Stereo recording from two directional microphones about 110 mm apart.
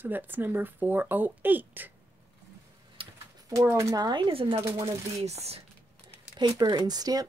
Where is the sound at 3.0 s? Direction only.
55° right (ahead or behind).